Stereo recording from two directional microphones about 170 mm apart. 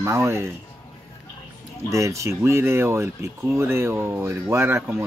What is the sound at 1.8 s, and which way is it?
Speech, 20° right (ahead or behind).